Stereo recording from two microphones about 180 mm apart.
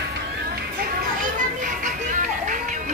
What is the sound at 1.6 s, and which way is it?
Music, 45° right (ahead or behind).